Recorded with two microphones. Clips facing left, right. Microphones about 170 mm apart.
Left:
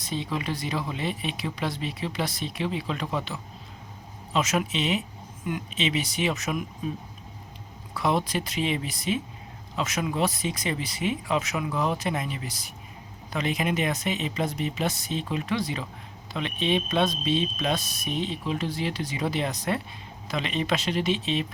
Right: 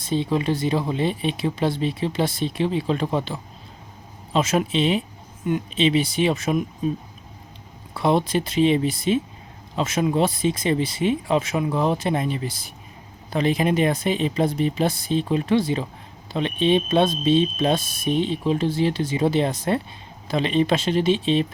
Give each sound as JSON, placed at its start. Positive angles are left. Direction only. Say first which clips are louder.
{"t": 0.0, "sound": "speech", "louder": "right 8 dB", "side_deg": -30}
{"t": 7.9, "sound": "speech", "louder": "right 6 dB", "side_deg": -30}